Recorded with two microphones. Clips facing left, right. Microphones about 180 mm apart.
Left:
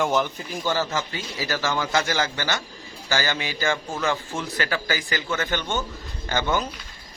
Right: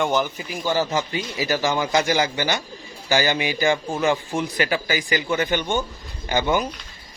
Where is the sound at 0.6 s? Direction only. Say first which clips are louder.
Right 3 dB; 15° right (ahead or behind).